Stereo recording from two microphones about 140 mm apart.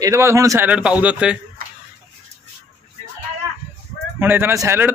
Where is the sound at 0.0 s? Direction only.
20° right (ahead or behind).